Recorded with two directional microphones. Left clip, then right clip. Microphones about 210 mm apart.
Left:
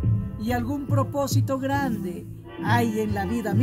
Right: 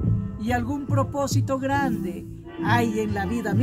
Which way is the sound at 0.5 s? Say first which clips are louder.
Right 1 dB; 10° left (ahead or behind).